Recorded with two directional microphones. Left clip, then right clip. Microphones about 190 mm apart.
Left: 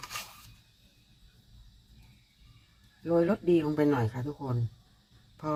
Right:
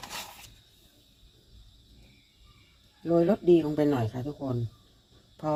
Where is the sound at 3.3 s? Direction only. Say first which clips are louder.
Right 4 dB; 15° right (ahead or behind).